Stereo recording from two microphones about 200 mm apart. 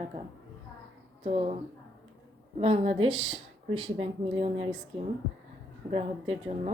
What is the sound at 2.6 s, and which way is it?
Speech, 30° right (ahead or behind).